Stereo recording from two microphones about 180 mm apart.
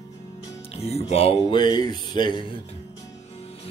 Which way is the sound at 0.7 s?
35° left (ahead or behind).